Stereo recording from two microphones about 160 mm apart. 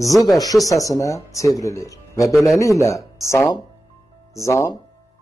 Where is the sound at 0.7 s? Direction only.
20° left (ahead or behind).